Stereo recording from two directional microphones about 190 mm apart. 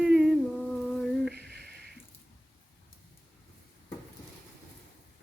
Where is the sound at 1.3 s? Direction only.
60° right (ahead or behind).